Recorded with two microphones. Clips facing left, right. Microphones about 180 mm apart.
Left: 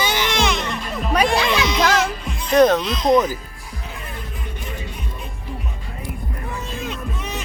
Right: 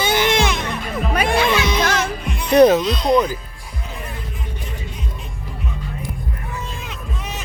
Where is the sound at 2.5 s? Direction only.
10° right (ahead or behind).